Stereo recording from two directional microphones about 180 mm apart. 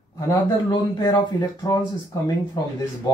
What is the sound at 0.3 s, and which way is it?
A man's voice, 25° left (ahead or behind).